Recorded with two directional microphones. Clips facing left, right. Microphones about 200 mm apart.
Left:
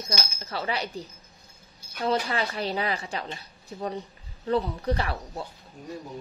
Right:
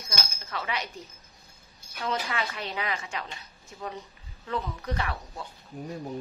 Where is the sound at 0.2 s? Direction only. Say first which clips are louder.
Left 3 dB; 35° left (ahead or behind).